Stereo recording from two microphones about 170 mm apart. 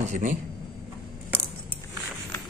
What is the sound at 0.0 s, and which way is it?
Speech, 50° right (ahead or behind).